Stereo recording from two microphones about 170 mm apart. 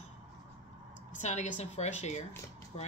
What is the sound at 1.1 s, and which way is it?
Speech, 45° left (ahead or behind).